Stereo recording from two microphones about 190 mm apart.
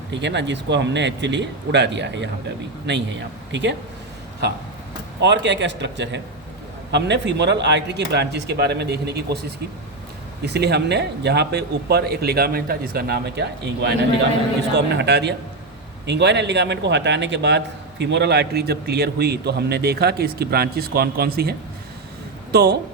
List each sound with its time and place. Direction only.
0.1 s a man's voice: 65° right (ahead or behind)
5.2 s a man's voice: 65° right (ahead or behind)
10.4 s a man's voice: 60° right (ahead or behind)
22.5 s a man's voice: 55° right (ahead or behind)